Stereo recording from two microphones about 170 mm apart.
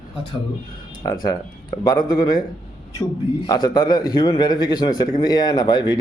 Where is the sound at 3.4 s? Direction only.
25° left (ahead or behind).